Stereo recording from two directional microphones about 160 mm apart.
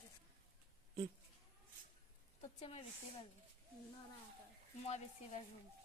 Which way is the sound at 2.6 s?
45° left (ahead or behind).